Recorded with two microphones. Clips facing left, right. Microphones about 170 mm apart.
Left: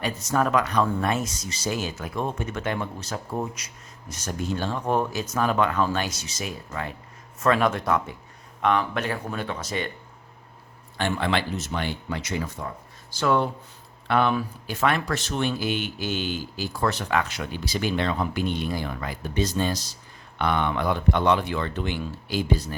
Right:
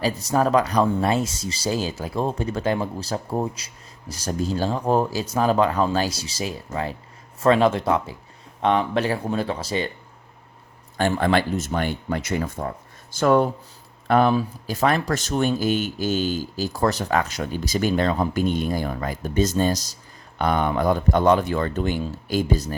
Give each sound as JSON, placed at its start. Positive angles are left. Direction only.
{"t": 0.0, "sound": "speech", "side_deg": -30}
{"t": 10.9, "sound": "speech", "side_deg": -45}